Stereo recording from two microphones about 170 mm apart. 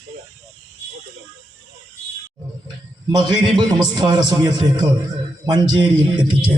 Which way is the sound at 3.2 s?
25° right (ahead or behind).